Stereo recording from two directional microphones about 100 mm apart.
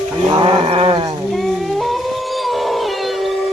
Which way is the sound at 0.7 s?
70° right (ahead or behind).